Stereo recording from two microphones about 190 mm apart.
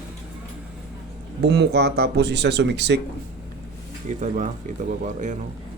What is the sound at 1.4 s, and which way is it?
Speech, 60° right (ahead or behind).